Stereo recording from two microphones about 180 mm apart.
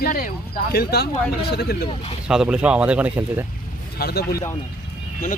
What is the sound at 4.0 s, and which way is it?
Speech, 60° left (ahead or behind).